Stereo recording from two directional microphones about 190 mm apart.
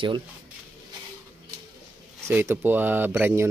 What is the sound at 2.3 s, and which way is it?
Speech, 10° right (ahead or behind).